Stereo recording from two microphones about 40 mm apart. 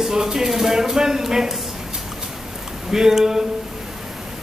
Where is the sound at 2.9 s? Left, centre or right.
Centre.